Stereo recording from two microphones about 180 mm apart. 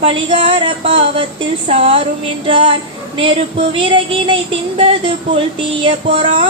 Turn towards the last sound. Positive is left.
turn(degrees=-30)  # may be behind; listen again after turning